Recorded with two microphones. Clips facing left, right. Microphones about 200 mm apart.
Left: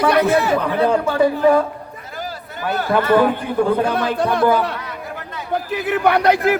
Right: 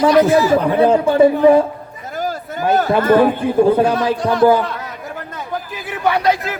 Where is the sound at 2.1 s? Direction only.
45° right (ahead or behind).